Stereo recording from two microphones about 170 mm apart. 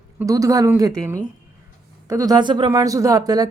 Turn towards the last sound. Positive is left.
turn(degrees=-20)  # may be behind; listen again after turning